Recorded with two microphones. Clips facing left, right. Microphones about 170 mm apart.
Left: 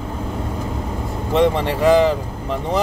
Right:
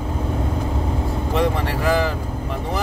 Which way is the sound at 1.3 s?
20° left (ahead or behind).